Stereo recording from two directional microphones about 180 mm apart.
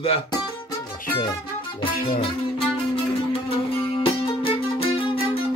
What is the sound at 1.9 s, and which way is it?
Music, 55° left (ahead or behind).